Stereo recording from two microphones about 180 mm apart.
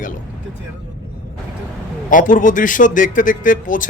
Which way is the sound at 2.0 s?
45° left (ahead or behind).